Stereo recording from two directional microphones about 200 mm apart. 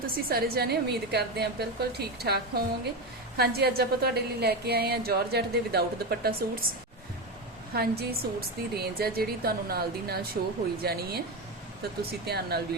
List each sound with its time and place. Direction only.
0.0 s a woman's voice: 50° right (ahead or behind)
7.7 s a woman's voice: 50° right (ahead or behind)
12.2 s a woman's voice: 50° right (ahead or behind)